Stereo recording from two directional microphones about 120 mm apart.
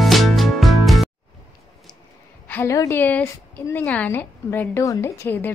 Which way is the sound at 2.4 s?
20° left (ahead or behind).